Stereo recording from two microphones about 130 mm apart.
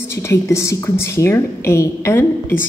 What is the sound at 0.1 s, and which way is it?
Speech, 20° left (ahead or behind).